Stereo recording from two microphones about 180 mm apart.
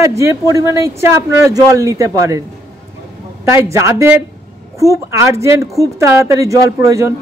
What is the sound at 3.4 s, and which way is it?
A man's voice, 15° right (ahead or behind).